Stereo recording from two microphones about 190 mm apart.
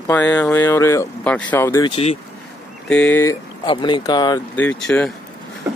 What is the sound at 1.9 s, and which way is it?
Speech, 30° left (ahead or behind).